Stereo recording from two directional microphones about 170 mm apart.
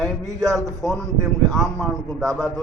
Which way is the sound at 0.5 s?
Centre (ahead or behind).